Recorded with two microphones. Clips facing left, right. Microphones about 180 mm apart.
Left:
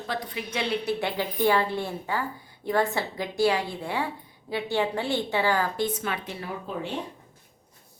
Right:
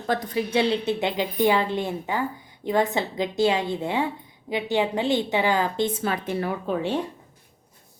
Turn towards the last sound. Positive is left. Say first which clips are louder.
# right 7 dB
turn(degrees=-70)  # may be behind; listen again after turning